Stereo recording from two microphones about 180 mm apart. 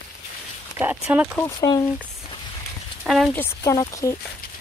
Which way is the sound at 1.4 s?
20° left (ahead or behind).